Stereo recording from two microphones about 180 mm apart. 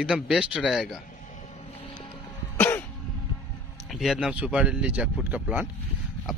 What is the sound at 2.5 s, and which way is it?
Cough, 15° left (ahead or behind).